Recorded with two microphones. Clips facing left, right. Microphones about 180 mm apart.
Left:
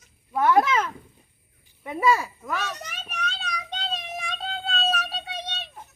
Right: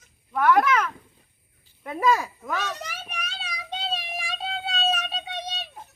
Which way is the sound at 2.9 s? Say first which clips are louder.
Left 3 dB; 10° right (ahead or behind).